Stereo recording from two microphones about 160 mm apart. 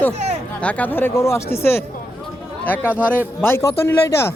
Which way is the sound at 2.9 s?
10° right (ahead or behind).